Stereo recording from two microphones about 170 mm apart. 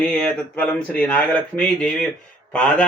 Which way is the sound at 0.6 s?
10° left (ahead or behind).